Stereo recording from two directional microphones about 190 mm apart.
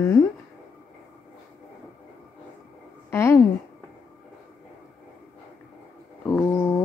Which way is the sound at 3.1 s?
15° left (ahead or behind).